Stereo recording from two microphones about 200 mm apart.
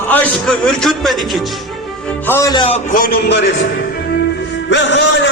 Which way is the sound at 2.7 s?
40° left (ahead or behind).